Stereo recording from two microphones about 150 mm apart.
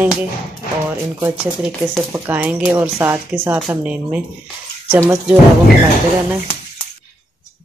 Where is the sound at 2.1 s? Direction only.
15° right (ahead or behind).